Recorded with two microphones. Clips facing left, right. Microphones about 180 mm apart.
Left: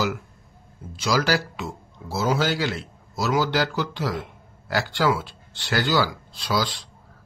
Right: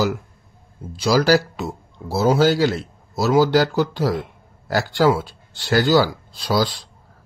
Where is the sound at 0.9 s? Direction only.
35° right (ahead or behind).